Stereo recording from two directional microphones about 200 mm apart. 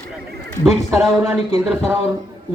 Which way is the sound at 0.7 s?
Centre (ahead or behind).